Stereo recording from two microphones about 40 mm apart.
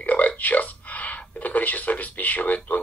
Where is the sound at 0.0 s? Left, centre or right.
Left.